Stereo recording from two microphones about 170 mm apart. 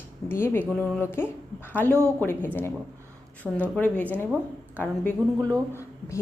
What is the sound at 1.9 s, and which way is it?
Speech, 15° right (ahead or behind).